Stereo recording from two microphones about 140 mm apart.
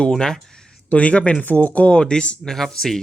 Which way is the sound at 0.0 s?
5° left (ahead or behind).